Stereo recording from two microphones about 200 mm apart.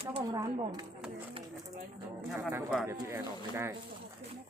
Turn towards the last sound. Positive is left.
turn(degrees=-10)  # may be behind; listen again after turning